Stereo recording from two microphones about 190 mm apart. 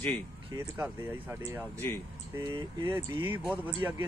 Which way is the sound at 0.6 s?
10° right (ahead or behind).